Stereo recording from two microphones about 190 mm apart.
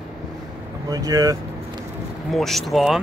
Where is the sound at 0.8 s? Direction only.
20° right (ahead or behind).